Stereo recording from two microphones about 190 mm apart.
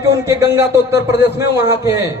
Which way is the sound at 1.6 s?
15° right (ahead or behind).